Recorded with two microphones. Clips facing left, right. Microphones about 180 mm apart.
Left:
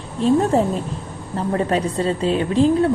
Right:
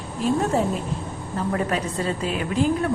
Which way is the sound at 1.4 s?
30° left (ahead or behind).